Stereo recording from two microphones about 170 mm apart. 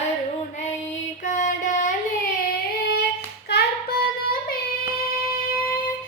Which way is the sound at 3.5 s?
75° left (ahead or behind).